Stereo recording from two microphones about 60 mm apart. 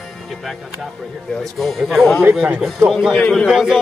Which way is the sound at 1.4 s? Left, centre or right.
Centre.